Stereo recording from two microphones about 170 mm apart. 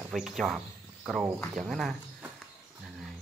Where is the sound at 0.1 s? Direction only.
Centre (ahead or behind).